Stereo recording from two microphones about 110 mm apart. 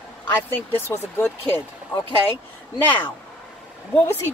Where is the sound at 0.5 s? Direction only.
20° left (ahead or behind).